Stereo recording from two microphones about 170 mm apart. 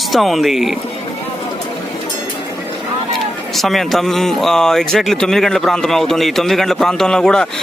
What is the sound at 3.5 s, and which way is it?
Speech, centre (ahead or behind).